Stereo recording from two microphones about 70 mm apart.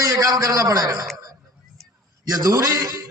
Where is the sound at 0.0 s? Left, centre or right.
Right.